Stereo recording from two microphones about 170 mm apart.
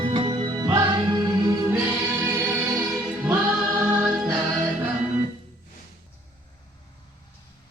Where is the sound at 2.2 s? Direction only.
10° right (ahead or behind).